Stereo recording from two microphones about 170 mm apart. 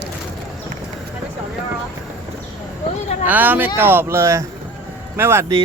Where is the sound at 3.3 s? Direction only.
10° right (ahead or behind).